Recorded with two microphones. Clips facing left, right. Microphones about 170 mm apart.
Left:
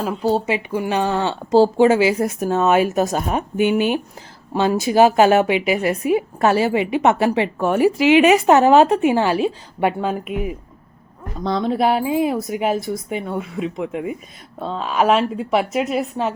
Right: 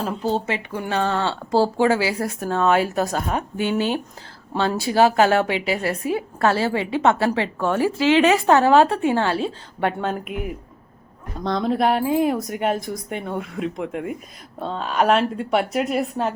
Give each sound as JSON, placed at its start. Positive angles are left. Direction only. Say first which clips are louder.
{"t": 0.0, "sound": "a woman's voice", "louder": "left 4 dB", "side_deg": 10}